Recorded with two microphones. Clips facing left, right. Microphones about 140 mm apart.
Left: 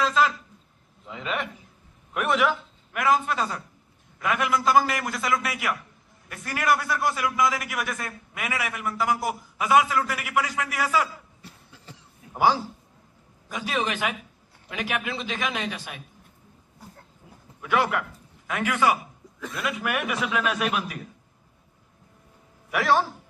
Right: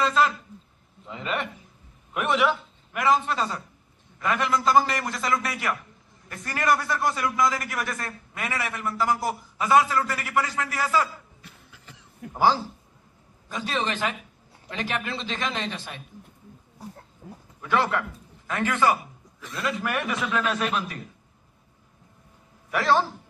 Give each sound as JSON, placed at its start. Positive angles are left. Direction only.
{"t": 0.0, "sound": "a man's voice", "side_deg": 0}
{"t": 11.4, "sound": "a sound", "side_deg": 35}
{"t": 12.3, "sound": "a man's voice", "side_deg": 5}
{"t": 17.6, "sound": "a man's voice", "side_deg": 5}
{"t": 22.7, "sound": "a man's voice", "side_deg": 5}